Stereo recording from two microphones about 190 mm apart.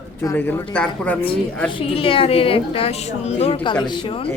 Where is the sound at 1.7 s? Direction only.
30° left (ahead or behind).